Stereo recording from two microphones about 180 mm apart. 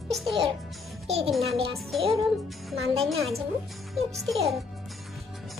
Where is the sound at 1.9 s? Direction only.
Centre (ahead or behind).